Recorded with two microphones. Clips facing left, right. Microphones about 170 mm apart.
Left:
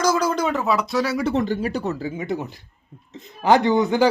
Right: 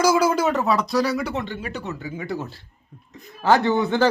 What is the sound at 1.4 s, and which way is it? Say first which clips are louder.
Speech: left 7 dB; 40° left (ahead or behind).